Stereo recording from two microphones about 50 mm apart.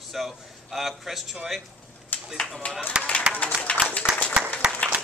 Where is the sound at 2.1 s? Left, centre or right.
Left.